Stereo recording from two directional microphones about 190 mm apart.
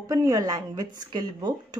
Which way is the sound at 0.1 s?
20° right (ahead or behind).